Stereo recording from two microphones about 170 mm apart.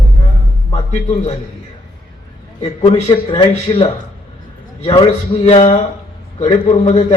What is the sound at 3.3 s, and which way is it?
Speech, 30° left (ahead or behind).